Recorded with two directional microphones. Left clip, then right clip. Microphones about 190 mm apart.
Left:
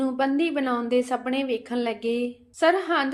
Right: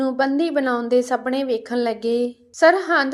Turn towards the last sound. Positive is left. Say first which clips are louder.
# right 6 dB
turn(degrees=-20)  # may be behind; listen again after turning